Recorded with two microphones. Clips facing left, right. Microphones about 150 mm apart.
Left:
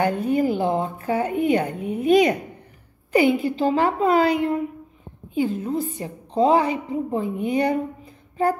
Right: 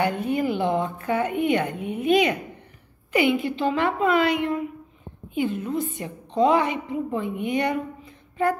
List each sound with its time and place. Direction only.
0.0 s a woman's voice: 35° left (ahead or behind)